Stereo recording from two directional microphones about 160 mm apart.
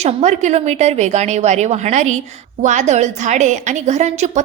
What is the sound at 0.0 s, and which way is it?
A woman's voice, 45° right (ahead or behind).